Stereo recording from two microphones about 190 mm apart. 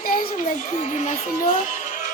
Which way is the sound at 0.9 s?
40° left (ahead or behind).